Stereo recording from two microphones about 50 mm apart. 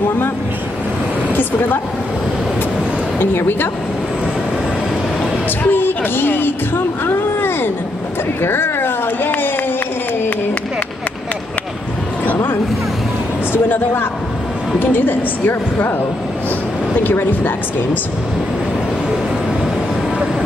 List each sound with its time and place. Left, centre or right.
3.2 s a woman's voice: left
5.6 s speech: left
7.1 s a sound: left
13.5 s a woman's voice: left
16.9 s speech: left